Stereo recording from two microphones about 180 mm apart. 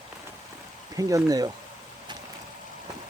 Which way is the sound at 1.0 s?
20° right (ahead or behind).